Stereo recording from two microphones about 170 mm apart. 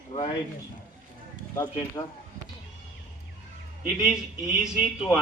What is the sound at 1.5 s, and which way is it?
Speech, 20° left (ahead or behind).